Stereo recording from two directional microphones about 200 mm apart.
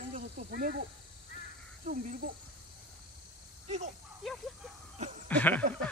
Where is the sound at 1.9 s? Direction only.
40° right (ahead or behind).